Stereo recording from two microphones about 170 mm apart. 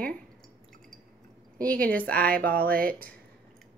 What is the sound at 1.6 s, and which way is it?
Speech, 10° left (ahead or behind).